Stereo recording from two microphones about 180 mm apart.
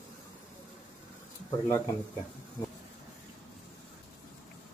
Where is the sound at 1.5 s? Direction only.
15° left (ahead or behind).